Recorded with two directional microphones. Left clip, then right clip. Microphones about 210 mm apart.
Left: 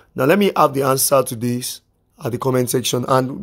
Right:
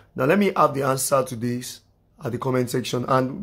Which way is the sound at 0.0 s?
45° left (ahead or behind).